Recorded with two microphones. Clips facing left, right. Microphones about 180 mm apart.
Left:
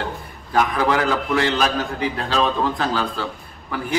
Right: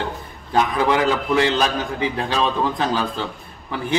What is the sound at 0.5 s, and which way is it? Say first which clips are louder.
A man's voice: right 1 dB; 20° right (ahead or behind).